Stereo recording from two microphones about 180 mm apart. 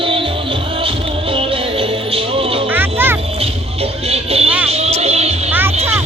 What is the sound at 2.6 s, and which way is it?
Music, 10° right (ahead or behind).